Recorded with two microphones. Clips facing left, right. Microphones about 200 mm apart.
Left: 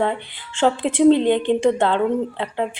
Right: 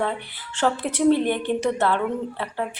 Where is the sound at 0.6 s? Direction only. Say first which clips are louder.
Left 5 dB; 25° left (ahead or behind).